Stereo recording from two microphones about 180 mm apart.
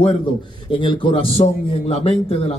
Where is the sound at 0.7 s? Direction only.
30° left (ahead or behind).